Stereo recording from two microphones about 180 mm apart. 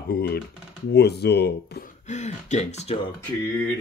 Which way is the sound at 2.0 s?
40° left (ahead or behind).